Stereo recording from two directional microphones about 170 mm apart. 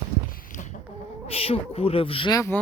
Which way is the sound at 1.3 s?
35° left (ahead or behind).